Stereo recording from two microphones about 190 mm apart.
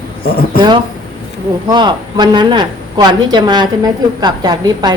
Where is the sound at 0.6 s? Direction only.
25° right (ahead or behind).